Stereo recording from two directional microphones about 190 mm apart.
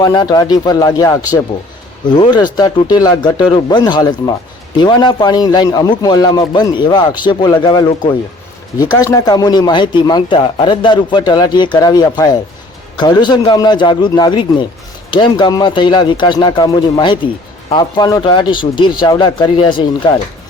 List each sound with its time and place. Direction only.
0.0 s speech: 20° left (ahead or behind)